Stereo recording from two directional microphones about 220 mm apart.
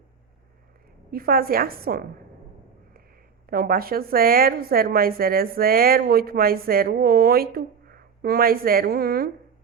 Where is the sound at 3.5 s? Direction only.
40° right (ahead or behind).